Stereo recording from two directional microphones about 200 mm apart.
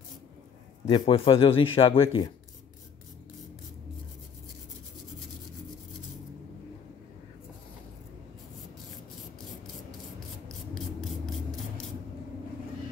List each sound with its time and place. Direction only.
0.8 s a man's voice: 25° left (ahead or behind)